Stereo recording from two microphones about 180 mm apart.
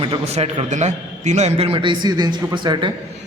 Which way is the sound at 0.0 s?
35° right (ahead or behind).